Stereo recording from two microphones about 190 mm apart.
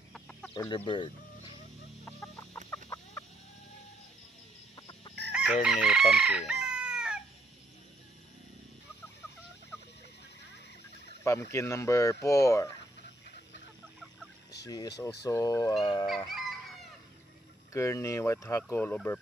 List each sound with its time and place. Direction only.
0.1 s chicken: 5° left (ahead or behind)
0.7 s speech: 25° left (ahead or behind)
2.0 s chicken: 15° left (ahead or behind)
4.7 s chicken: 25° left (ahead or behind)
5.3 s chicken: 5° right (ahead or behind)
11.2 s speech: 15° left (ahead or behind)
14.7 s speech: 20° left (ahead or behind)
16.3 s music: centre (ahead or behind)
17.7 s speech: 15° left (ahead or behind)